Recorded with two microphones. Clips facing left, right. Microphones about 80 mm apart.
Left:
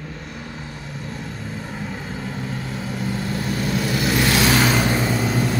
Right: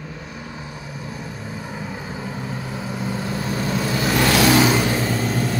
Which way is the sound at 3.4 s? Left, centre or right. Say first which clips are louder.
Even; right.